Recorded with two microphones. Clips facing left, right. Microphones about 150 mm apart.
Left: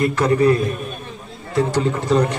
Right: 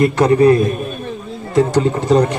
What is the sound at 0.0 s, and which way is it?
Speech, 35° right (ahead or behind).